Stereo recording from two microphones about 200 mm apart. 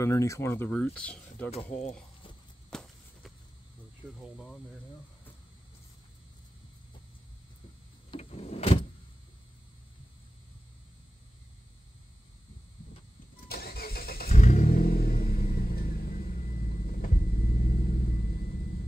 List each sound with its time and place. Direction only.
0.0 s speech: 15° left (ahead or behind)
1.5 s speech: 35° left (ahead or behind)
2.7 s a sound: centre (ahead or behind)
8.1 s power windows: 30° left (ahead or behind)
13.5 s vehicle: 50° left (ahead or behind)
14.3 s vehicle: 35° left (ahead or behind)